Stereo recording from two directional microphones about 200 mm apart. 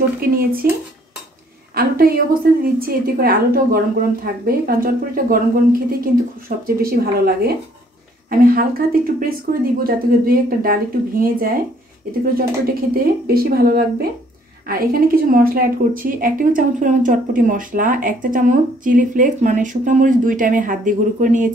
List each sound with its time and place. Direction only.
0.2 s speech: 45° right (ahead or behind)
1.8 s a woman's voice: 45° right (ahead or behind)